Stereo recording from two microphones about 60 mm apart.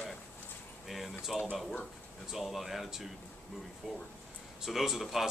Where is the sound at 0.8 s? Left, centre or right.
Centre.